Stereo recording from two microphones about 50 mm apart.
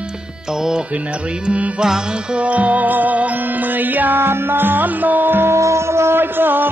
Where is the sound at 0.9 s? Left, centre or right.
Right.